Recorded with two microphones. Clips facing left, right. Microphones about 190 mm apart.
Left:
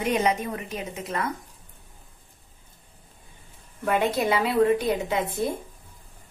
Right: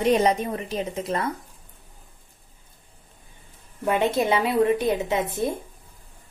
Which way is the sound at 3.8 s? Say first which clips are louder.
Right 2 dB; 20° right (ahead or behind).